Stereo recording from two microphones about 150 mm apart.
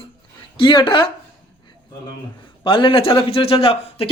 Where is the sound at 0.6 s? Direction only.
30° left (ahead or behind).